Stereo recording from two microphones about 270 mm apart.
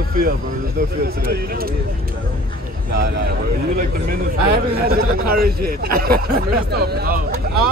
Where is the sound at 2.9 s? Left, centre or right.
Right.